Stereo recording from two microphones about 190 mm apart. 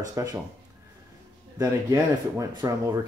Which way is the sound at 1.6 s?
15° right (ahead or behind).